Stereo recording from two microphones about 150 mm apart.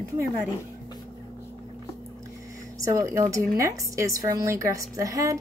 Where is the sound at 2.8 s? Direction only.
20° right (ahead or behind).